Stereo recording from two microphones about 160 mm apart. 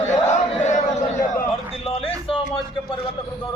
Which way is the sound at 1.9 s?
35° left (ahead or behind).